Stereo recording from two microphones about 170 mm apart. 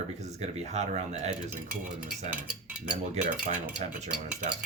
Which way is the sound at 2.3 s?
10° right (ahead or behind).